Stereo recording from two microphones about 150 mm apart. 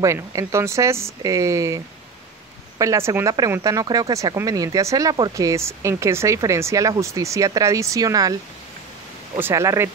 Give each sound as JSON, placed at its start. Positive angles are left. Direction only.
{"t": 0.0, "sound": "speech", "side_deg": -20}
{"t": 2.8, "sound": "speech", "side_deg": -20}
{"t": 9.4, "sound": "speech", "side_deg": -20}